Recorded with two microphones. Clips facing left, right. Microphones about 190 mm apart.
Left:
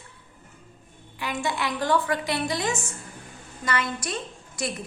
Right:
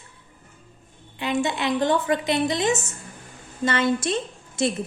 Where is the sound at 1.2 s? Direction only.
20° right (ahead or behind).